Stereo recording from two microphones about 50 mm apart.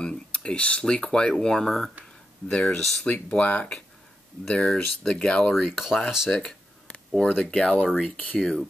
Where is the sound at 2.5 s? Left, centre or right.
Left.